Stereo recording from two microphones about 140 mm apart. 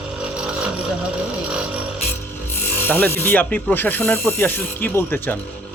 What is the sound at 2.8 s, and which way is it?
Speech, 15° left (ahead or behind).